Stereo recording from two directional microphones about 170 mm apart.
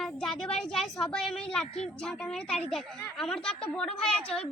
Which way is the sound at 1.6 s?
35° left (ahead or behind).